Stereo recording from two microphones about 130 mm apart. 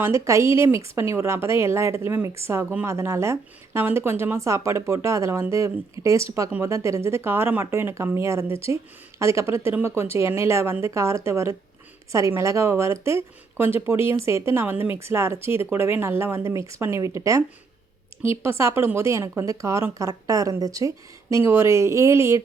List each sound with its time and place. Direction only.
0.0 s speech: 20° right (ahead or behind)
18.4 s speech: 20° right (ahead or behind)